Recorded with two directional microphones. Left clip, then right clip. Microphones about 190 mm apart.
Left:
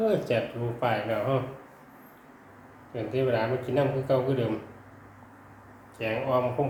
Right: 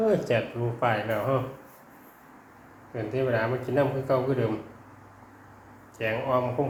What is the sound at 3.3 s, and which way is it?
Speech, 20° right (ahead or behind).